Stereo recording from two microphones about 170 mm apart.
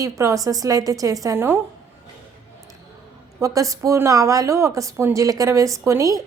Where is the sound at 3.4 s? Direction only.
20° right (ahead or behind).